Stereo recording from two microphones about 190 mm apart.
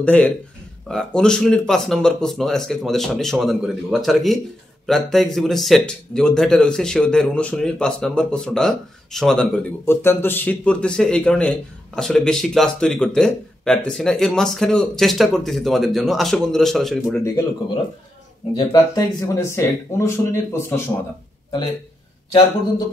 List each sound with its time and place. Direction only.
0.0 s speech: 10° left (ahead or behind)
18.7 s speech: 20° left (ahead or behind)